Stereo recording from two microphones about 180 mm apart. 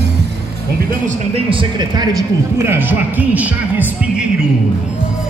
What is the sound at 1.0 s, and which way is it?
Speech, 30° right (ahead or behind).